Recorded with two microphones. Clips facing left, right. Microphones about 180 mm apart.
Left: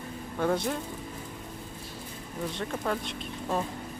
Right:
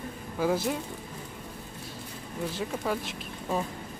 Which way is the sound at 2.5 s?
5° right (ahead or behind).